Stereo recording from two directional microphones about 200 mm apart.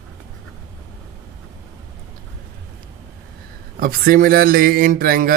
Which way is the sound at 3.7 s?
45° right (ahead or behind).